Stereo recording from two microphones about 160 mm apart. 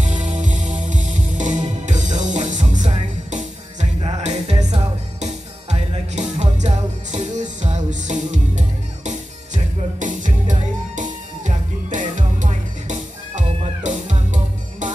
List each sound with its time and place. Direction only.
0.0 s music: 50° right (ahead or behind)